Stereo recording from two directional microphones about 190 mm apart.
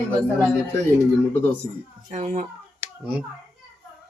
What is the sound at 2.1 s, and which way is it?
Speech, 40° right (ahead or behind).